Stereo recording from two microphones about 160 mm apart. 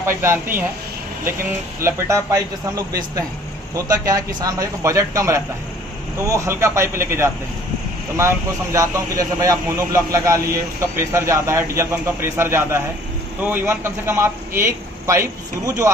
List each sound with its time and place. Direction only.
0.0 s speech: 15° right (ahead or behind)
1.8 s a man's voice: 15° right (ahead or behind)